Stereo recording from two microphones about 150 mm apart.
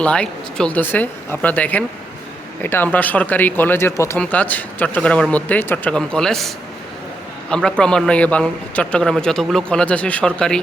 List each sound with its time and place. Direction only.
0.0 s speech: 10° left (ahead or behind)
7.5 s speech: 5° left (ahead or behind)